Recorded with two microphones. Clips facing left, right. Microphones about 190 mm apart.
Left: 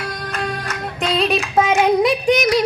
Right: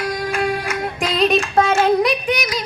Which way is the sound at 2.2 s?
45° left (ahead or behind).